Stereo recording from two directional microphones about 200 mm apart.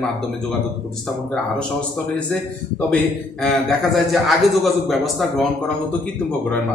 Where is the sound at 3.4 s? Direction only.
Centre (ahead or behind).